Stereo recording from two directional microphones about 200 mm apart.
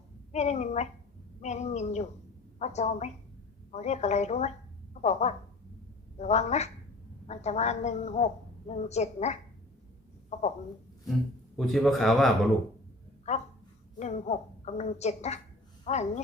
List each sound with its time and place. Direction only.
0.3 s a woman's voice: 35° left (ahead or behind)
11.5 s speech: centre (ahead or behind)
13.3 s a woman's voice: 35° left (ahead or behind)